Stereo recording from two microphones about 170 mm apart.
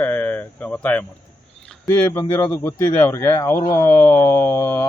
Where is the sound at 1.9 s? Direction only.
10° left (ahead or behind).